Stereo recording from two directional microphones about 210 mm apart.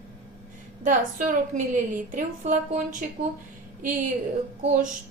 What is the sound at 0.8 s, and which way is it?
A woman's voice, 40° right (ahead or behind).